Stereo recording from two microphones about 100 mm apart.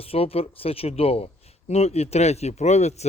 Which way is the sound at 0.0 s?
75° left (ahead or behind).